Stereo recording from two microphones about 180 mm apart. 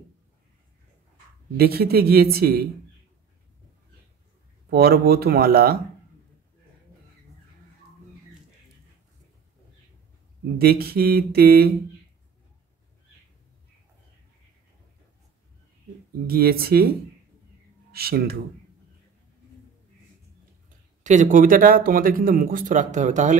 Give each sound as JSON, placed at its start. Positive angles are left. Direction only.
{"t": 1.6, "sound": "speech", "side_deg": -60}
{"t": 4.6, "sound": "speech", "side_deg": -60}
{"t": 10.6, "sound": "speech", "side_deg": -55}
{"t": 16.3, "sound": "speech", "side_deg": -55}
{"t": 17.9, "sound": "speech", "side_deg": -60}
{"t": 21.0, "sound": "speech", "side_deg": -45}